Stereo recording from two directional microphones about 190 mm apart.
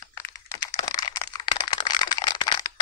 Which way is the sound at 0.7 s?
20° left (ahead or behind).